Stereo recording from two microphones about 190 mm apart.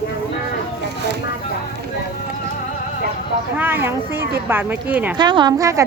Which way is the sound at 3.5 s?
10° right (ahead or behind).